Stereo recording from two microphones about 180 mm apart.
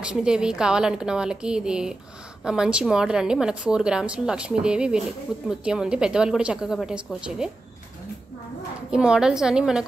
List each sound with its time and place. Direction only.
0.0 s a woman's voice: 5° right (ahead or behind)
8.9 s a woman's voice: 5° right (ahead or behind)